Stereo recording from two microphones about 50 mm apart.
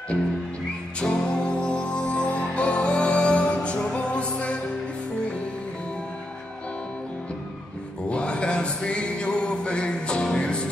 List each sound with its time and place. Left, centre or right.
0.9 s music: centre
8.1 s music: left